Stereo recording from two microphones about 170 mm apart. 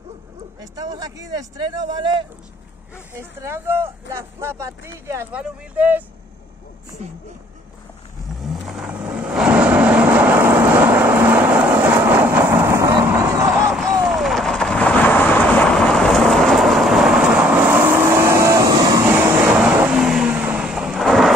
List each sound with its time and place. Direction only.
0.6 s speech: 20° right (ahead or behind)
3.2 s speech: 15° right (ahead or behind)
8.4 s vehicle: centre (ahead or behind)
13.7 s thunder: centre (ahead or behind)